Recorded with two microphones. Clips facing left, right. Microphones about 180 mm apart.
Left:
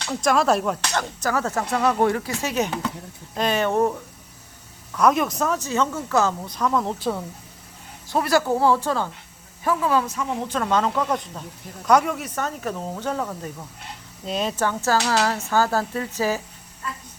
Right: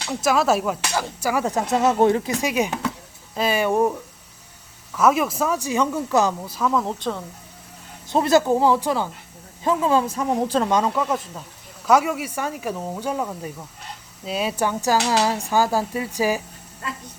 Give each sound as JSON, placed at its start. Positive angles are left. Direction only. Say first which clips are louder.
{"t": 0.1, "sound": "speech", "louder": "even", "side_deg": -5}
{"t": 2.4, "sound": "speech", "louder": "right 2 dB", "side_deg": -10}
{"t": 4.9, "sound": "speech", "louder": "right 1 dB", "side_deg": -5}
{"t": 6.4, "sound": "speech", "louder": "right 1 dB", "side_deg": -5}
{"t": 8.1, "sound": "speech", "louder": "right 3 dB", "side_deg": -20}
{"t": 9.6, "sound": "speech", "louder": "right 2 dB", "side_deg": -25}
{"t": 10.6, "sound": "speech", "louder": "right 1 dB", "side_deg": -15}